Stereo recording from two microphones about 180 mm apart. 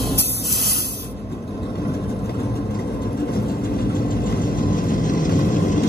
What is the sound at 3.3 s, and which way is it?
Vehicle, 55° left (ahead or behind).